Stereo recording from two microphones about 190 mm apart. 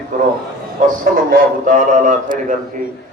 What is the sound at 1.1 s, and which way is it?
A man's voice, 50° right (ahead or behind).